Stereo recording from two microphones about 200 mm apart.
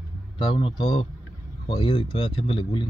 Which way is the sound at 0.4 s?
25° left (ahead or behind).